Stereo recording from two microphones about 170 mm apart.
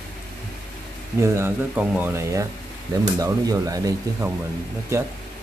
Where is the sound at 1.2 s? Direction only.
15° right (ahead or behind).